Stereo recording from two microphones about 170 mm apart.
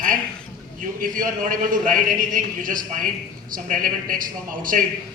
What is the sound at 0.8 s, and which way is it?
A man's voice, 50° right (ahead or behind).